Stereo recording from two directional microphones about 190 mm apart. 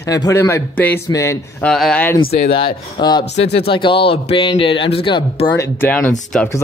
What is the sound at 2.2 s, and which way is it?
Speech, 30° left (ahead or behind).